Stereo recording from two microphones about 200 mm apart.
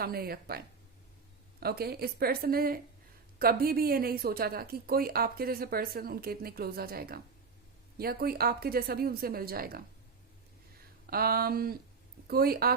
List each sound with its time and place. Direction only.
0.0 s speech: 50° right (ahead or behind)
1.6 s speech: 50° right (ahead or behind)
11.0 s speech: 50° right (ahead or behind)